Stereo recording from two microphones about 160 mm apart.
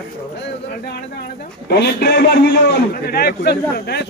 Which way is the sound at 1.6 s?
90° left.